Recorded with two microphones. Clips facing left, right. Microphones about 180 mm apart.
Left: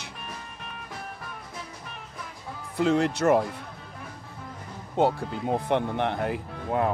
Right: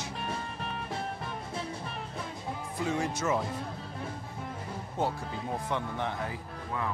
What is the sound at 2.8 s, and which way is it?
Speech, 70° left (ahead or behind).